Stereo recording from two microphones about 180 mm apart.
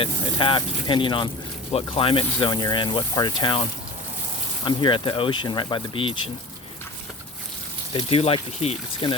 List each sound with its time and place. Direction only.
0.0 s speech: 30° left (ahead or behind)
7.9 s speech: 30° left (ahead or behind)